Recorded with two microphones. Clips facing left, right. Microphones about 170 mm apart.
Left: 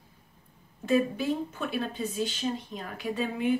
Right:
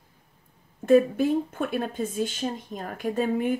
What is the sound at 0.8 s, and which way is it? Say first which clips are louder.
A woman's voice: right 6 dB; 50° right (ahead or behind).